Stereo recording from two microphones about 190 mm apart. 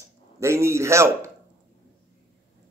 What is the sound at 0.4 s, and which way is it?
Speech, 15° right (ahead or behind).